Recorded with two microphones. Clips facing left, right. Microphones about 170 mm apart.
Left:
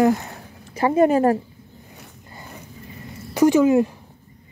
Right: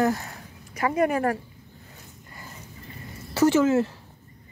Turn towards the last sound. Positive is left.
turn(degrees=15)  # may be behind; listen again after turning